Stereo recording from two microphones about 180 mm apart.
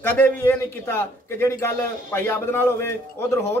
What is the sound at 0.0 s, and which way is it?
A man's voice, 10° left (ahead or behind).